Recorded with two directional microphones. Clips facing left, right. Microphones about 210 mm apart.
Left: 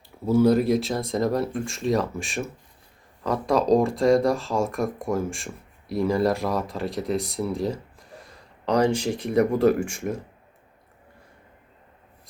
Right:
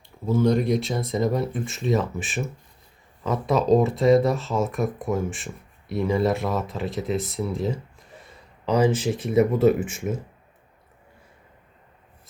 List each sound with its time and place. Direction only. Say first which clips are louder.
0.3 s speech: left 2 dB; 10° left (ahead or behind)